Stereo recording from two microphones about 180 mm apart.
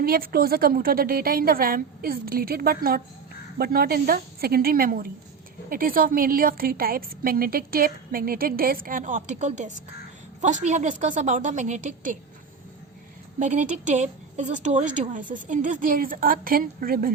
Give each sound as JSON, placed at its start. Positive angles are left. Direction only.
{"t": 0.0, "sound": "a woman's voice", "side_deg": -55}
{"t": 13.4, "sound": "a woman's voice", "side_deg": -40}